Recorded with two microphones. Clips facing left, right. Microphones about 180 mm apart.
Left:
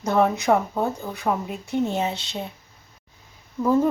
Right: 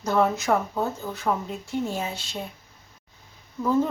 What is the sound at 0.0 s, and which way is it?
A woman's voice, 20° left (ahead or behind).